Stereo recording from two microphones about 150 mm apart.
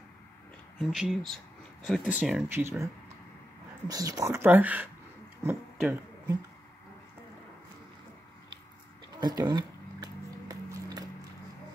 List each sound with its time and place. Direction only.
0.7 s speech: centre (ahead or behind)
2.6 s speech: 20° right (ahead or behind)
5.4 s plucked string instrument: 15° right (ahead or behind)
9.4 s a sound: 30° right (ahead or behind)